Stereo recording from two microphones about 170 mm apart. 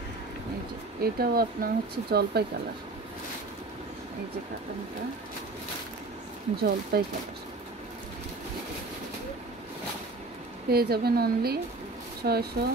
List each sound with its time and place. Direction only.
1.0 s speech: 60° right (ahead or behind)
6.5 s speech: 65° right (ahead or behind)
10.7 s speech: 65° right (ahead or behind)